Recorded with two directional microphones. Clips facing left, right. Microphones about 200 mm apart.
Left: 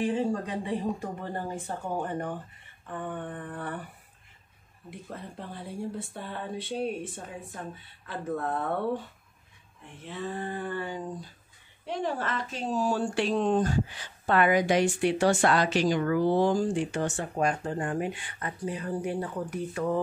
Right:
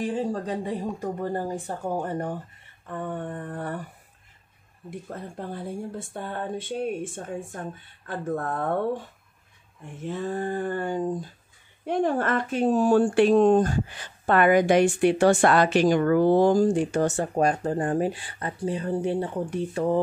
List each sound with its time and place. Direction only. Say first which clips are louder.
0.0 s a woman's voice: even; 40° right (ahead or behind)
5.9 s speech: right 4 dB; 50° right (ahead or behind)
8.1 s speech: right 2 dB; 50° right (ahead or behind)
10.0 s speech: right 6 dB; 45° right (ahead or behind); by 20.0 s 30° right (ahead or behind)